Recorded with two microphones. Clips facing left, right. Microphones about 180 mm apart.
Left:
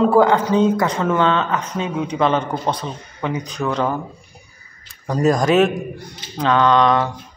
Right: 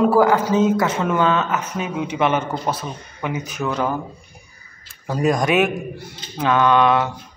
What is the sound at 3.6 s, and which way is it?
Speech, centre (ahead or behind).